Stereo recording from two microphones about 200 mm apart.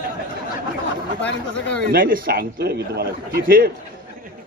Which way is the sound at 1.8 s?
45° right (ahead or behind).